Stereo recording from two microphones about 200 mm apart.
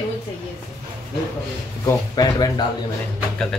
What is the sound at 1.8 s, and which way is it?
Speech, 20° left (ahead or behind).